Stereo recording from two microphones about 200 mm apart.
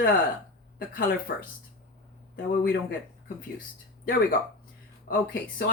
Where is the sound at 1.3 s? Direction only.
55° left (ahead or behind).